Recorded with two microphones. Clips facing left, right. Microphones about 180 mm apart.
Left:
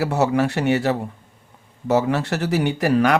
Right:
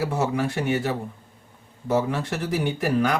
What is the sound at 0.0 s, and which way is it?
Speech, 70° left (ahead or behind).